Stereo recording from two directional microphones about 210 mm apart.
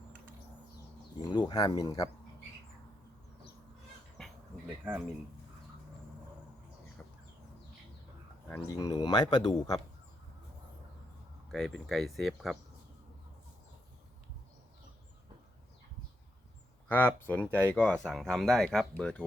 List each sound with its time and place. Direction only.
1.2 s speech: 20° left (ahead or behind)
4.2 s a sound: 5° left (ahead or behind)
4.9 s speech: 10° right (ahead or behind)
8.4 s speech: 10° left (ahead or behind)
11.5 s speech: centre (ahead or behind)
16.9 s speech: 10° left (ahead or behind)